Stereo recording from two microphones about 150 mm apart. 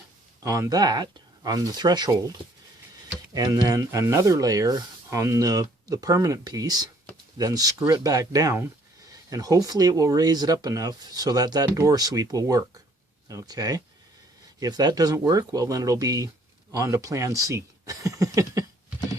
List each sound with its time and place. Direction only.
0.4 s speech: 20° right (ahead or behind)
3.3 s speech: 25° right (ahead or behind)